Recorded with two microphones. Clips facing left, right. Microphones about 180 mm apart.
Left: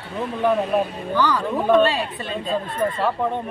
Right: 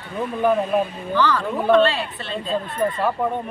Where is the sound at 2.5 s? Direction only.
Centre (ahead or behind).